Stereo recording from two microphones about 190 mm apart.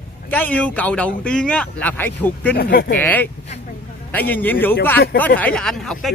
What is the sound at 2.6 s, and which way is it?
Speech, 55° left (ahead or behind).